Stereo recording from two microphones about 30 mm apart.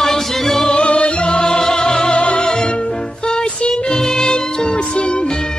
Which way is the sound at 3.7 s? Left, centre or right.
Centre.